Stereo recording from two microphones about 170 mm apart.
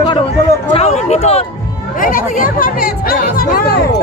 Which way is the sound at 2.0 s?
55° left (ahead or behind).